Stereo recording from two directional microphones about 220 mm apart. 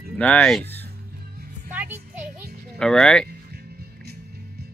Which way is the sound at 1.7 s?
5° right (ahead or behind).